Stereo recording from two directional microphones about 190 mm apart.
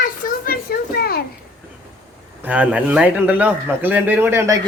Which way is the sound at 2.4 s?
5° right (ahead or behind).